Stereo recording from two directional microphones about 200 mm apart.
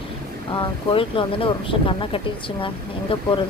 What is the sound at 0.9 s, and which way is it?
Speech, 25° left (ahead or behind).